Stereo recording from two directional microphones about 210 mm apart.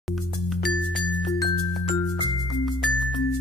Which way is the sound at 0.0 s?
Centre (ahead or behind).